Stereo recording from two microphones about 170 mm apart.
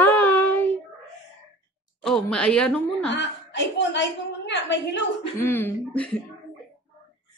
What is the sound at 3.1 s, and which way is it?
A woman's voice, 90° left.